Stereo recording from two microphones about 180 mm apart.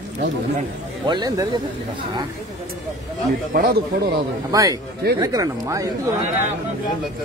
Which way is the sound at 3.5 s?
55° right (ahead or behind).